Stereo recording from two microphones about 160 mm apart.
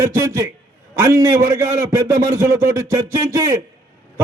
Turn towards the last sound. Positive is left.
turn(degrees=-20)  # may be behind; listen again after turning